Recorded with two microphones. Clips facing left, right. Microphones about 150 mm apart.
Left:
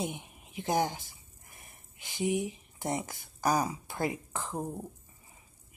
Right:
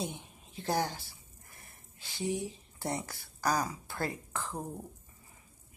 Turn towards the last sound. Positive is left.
turn(degrees=20)  # may be behind; listen again after turning